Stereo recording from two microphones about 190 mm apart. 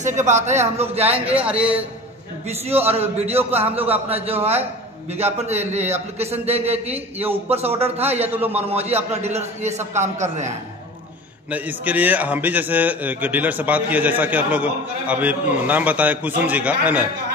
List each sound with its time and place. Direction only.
0.0 s a man's voice: 40° right (ahead or behind)
1.2 s a man's voice: 5° right (ahead or behind)
2.8 s a man's voice: 30° right (ahead or behind)
11.5 s a man's voice: 10° right (ahead or behind)